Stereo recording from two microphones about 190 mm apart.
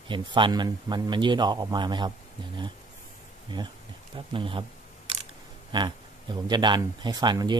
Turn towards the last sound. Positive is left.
turn(degrees=-20)  # may be behind; listen again after turning